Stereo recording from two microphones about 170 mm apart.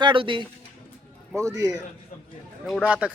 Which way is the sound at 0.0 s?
30° right (ahead or behind).